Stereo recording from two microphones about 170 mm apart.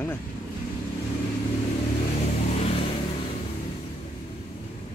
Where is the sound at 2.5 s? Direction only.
40° left (ahead or behind).